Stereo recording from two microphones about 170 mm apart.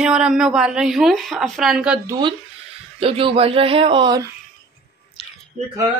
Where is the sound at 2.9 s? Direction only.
35° right (ahead or behind).